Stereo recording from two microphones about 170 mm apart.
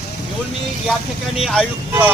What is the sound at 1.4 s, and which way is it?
Speech, 5° left (ahead or behind).